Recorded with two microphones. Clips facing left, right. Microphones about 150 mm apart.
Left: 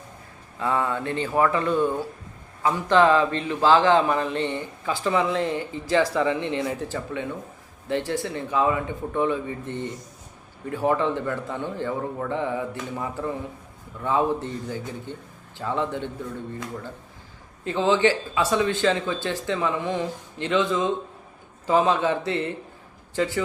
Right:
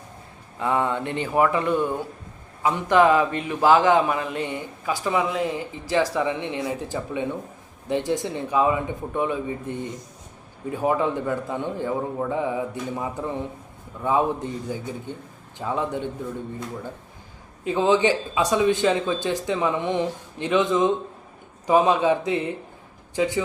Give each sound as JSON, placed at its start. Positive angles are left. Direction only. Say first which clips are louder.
{"t": 0.6, "sound": "speech", "louder": "right 1 dB", "side_deg": -20}
{"t": 17.6, "sound": "speech", "louder": "right 1 dB", "side_deg": -15}